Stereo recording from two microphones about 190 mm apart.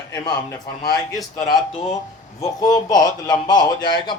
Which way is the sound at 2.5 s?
20° left (ahead or behind).